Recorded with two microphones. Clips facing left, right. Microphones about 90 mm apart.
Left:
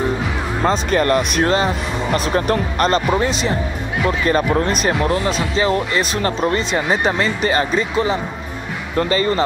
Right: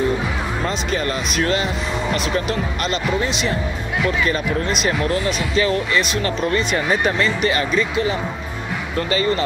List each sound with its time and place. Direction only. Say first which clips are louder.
0.7 s speech: left 9 dB; 50° left (ahead or behind)
1.4 s speech: left 3 dB; 35° left (ahead or behind)
5.0 s speech: left 2 dB; 25° left (ahead or behind)